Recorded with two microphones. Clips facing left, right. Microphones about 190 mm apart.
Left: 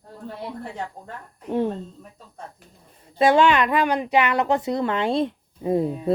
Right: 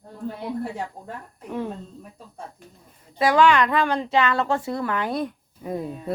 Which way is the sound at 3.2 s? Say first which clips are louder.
Left 1 dB; 25° left (ahead or behind).